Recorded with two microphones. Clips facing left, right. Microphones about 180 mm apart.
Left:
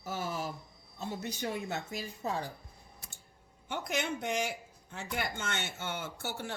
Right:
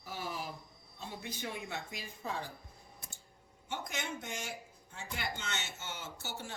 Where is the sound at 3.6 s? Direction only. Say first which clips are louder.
Left 6 dB; 65° left (ahead or behind).